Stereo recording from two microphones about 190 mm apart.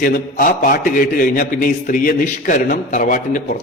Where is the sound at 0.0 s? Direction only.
45° left (ahead or behind).